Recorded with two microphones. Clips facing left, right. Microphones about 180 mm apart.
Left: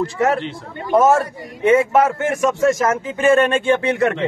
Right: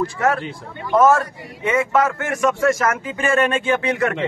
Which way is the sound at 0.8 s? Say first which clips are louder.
Left 1 dB; 20° left (ahead or behind).